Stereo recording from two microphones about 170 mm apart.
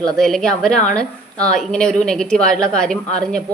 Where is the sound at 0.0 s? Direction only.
5° left (ahead or behind).